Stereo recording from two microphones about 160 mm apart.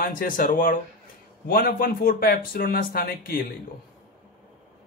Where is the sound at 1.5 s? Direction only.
70° left (ahead or behind).